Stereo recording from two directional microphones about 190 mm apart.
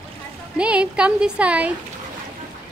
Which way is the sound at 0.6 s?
5° right (ahead or behind).